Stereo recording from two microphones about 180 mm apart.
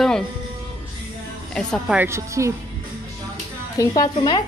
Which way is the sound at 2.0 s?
15° right (ahead or behind).